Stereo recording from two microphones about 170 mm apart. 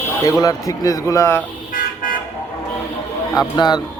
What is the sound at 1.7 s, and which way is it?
Vehicle, 55° left (ahead or behind).